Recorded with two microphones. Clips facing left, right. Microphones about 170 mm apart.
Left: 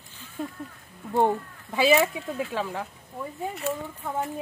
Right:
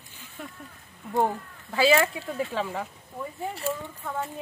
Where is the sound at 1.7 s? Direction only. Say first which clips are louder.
Left 1 dB; 10° left (ahead or behind).